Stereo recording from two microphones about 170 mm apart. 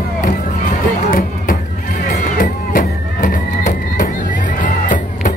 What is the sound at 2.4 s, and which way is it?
Music, 55° left (ahead or behind).